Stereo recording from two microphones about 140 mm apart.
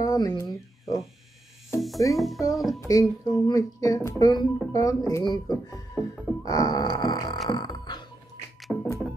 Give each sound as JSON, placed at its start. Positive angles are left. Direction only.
{"t": 0.0, "sound": "a sound", "side_deg": 25}
{"t": 1.8, "sound": "music", "side_deg": 0}
{"t": 2.1, "sound": "speech", "side_deg": 0}
{"t": 2.9, "sound": "speech", "side_deg": 25}
{"t": 7.4, "sound": "music", "side_deg": 30}
{"t": 8.7, "sound": "music", "side_deg": -5}